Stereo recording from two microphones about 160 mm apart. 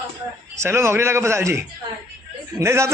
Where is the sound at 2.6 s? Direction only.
15° right (ahead or behind).